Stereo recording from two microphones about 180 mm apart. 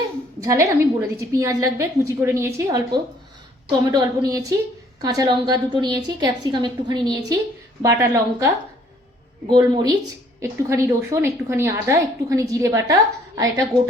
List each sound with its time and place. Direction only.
0.3 s a woman's voice: 15° right (ahead or behind)